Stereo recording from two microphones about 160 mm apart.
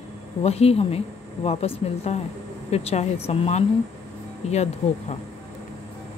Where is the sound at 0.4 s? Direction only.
40° left (ahead or behind).